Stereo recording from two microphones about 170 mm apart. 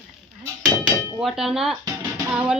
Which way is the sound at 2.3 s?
5° right (ahead or behind).